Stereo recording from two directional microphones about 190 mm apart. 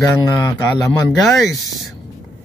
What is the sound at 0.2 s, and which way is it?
Speech, 15° left (ahead or behind).